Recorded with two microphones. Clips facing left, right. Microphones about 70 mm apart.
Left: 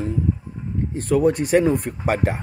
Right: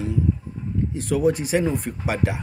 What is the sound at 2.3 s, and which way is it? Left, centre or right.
Speech, left.